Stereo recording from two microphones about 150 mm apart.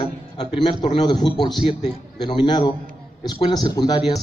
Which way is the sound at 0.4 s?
30° left (ahead or behind).